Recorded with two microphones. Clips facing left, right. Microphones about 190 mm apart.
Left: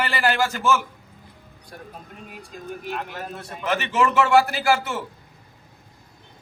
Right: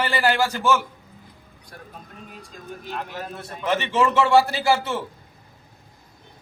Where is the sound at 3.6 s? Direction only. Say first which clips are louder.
Right 1 dB; 30° right (ahead or behind).